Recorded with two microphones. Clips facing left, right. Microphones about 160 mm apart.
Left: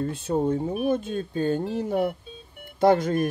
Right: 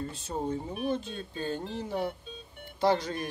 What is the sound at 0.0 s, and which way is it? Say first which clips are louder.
Speech: left 9 dB; 60° left (ahead or behind).